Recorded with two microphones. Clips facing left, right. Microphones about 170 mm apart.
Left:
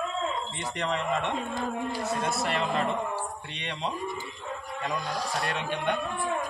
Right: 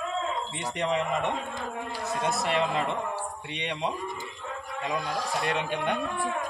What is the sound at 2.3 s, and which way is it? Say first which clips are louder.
A man's voice: right 1 dB; 15° right (ahead or behind).